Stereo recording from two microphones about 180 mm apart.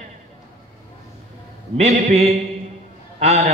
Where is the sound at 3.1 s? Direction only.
35° right (ahead or behind).